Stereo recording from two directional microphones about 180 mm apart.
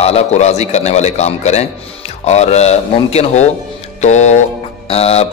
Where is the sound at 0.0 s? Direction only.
35° left (ahead or behind).